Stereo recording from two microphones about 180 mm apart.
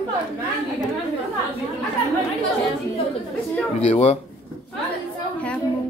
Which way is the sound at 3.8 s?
35° left (ahead or behind).